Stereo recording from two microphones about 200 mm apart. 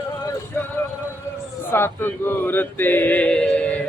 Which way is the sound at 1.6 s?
10° left (ahead or behind).